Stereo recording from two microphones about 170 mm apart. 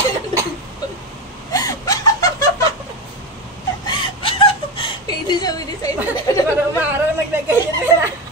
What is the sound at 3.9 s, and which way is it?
Chuckle, 30° left (ahead or behind).